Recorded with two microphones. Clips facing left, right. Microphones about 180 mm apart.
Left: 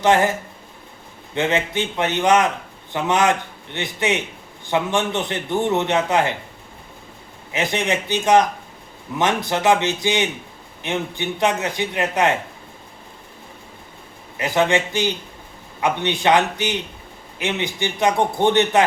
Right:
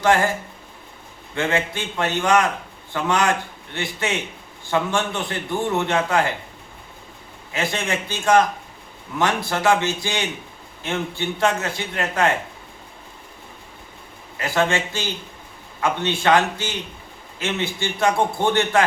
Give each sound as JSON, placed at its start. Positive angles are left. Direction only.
{"t": 0.0, "sound": "a man's voice", "side_deg": 20}
{"t": 1.4, "sound": "a man's voice", "side_deg": 20}
{"t": 7.5, "sound": "a man's voice", "side_deg": 20}
{"t": 14.3, "sound": "a man's voice", "side_deg": 20}